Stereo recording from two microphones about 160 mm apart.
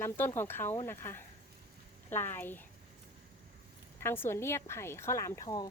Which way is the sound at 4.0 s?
15° left (ahead or behind).